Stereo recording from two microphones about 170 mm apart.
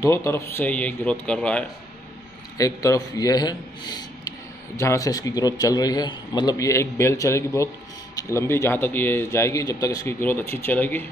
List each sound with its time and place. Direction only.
0.0 s speech: 15° left (ahead or behind)
2.5 s a man's voice: 20° left (ahead or behind)